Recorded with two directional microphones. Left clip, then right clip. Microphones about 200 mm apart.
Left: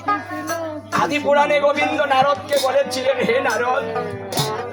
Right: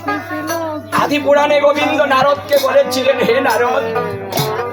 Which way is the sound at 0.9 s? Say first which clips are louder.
Right 4 dB; centre (ahead or behind).